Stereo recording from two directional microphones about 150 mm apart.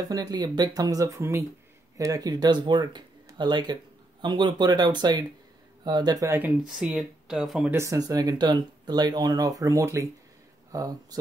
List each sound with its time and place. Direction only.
0.1 s speech: 25° right (ahead or behind)
6.8 s speech: 5° right (ahead or behind)
7.7 s speech: 20° right (ahead or behind)